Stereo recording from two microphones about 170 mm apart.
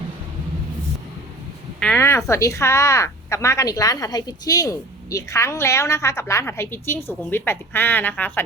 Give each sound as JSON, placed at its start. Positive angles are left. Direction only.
{"t": 1.8, "sound": "a woman's voice", "side_deg": 10}